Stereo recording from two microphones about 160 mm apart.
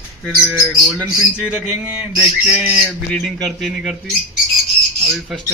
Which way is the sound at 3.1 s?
Centre (ahead or behind).